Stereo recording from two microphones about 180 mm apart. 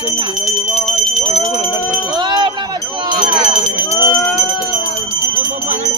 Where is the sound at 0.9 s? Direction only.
Centre (ahead or behind).